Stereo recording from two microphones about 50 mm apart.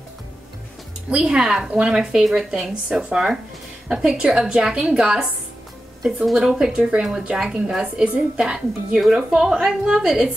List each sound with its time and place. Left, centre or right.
1.1 s a woman's voice: centre
6.3 s a woman's voice: centre
8.4 s a woman's voice: centre